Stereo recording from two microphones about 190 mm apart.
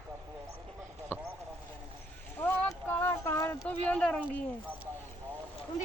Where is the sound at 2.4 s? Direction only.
10° left (ahead or behind).